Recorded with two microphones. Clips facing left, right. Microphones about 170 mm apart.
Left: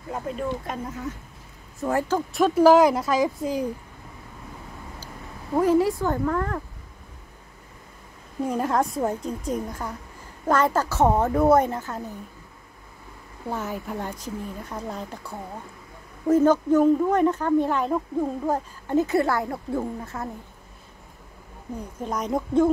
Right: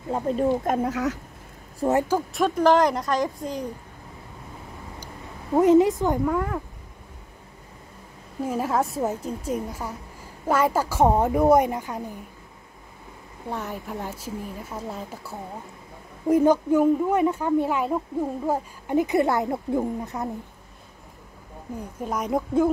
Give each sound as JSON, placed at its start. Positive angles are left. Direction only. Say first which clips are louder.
{"t": 0.1, "sound": "speech", "louder": "right 6 dB", "side_deg": -40}
{"t": 0.8, "sound": "speech", "louder": "right 7 dB", "side_deg": -80}
{"t": 1.8, "sound": "speech", "louder": "right 3 dB", "side_deg": -20}
{"t": 2.0, "sound": "speech", "louder": "left 1 dB", "side_deg": -5}
{"t": 5.6, "sound": "speech", "louder": "right 3 dB", "side_deg": -20}
{"t": 8.5, "sound": "speech", "louder": "left 1 dB", "side_deg": -5}
{"t": 13.5, "sound": "speech", "louder": "left 2 dB", "side_deg": 0}
{"t": 22.0, "sound": "speech", "louder": "right 1 dB", "side_deg": -5}